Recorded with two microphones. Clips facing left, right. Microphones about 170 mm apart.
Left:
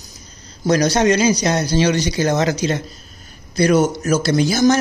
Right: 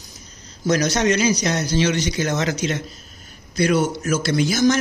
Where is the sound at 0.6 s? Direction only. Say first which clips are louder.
Left 4 dB; 35° left (ahead or behind).